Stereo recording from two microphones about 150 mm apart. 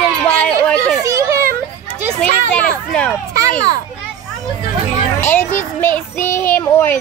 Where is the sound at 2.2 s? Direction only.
5° left (ahead or behind).